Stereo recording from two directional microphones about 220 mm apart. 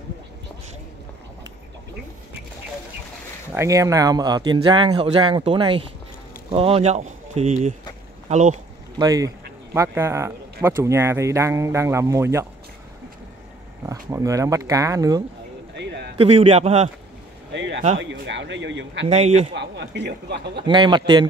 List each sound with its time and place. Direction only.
3.5 s speech: 15° right (ahead or behind); by 8.5 s 35° right (ahead or behind)
8.9 s speech: 15° right (ahead or behind)
13.8 s speech: 15° right (ahead or behind)
15.7 s a sound: 50° right (ahead or behind)
16.2 s speech: 25° right (ahead or behind)
17.5 s a sound: 55° right (ahead or behind)
17.9 s speech: 55° right (ahead or behind)
19.0 s speech: 30° right (ahead or behind)
19.5 s speech: 50° right (ahead or behind)
20.6 s speech: 20° right (ahead or behind)